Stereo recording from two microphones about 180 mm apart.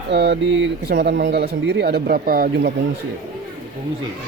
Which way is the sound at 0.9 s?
60° right (ahead or behind).